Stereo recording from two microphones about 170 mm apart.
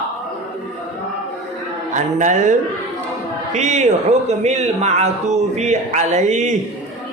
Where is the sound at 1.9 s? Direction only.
45° right (ahead or behind).